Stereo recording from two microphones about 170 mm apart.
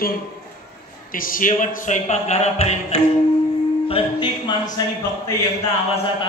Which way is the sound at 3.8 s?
30° left (ahead or behind).